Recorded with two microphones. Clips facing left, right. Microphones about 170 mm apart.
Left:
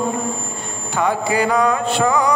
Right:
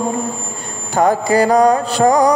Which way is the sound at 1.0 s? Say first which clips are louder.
Right 5 dB; 40° right (ahead or behind).